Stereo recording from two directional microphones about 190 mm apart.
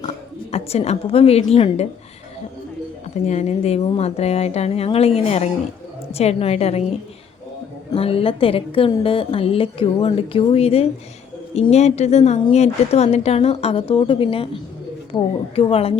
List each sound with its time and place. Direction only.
0.5 s a woman's voice: 35° left (ahead or behind)
3.2 s a woman's voice: 35° left (ahead or behind)
7.9 s a woman's voice: 30° left (ahead or behind)